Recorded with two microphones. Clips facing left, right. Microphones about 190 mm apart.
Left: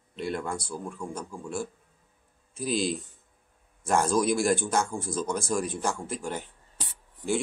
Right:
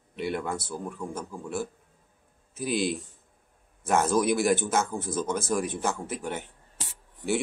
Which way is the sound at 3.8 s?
5° right (ahead or behind).